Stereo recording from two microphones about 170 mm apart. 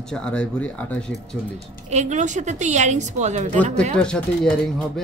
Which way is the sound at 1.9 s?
45° right (ahead or behind).